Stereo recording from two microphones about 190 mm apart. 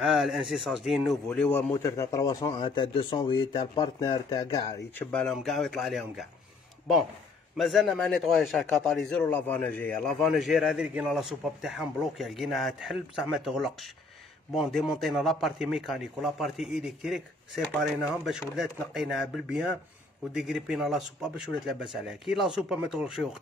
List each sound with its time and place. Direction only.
0.0 s speech: centre (ahead or behind); by 4.6 s 20° left (ahead or behind)
4.9 s speech: 5° left (ahead or behind)
7.5 s speech: centre (ahead or behind)
17.6 s speech: 10° left (ahead or behind)
18.2 s speech: centre (ahead or behind)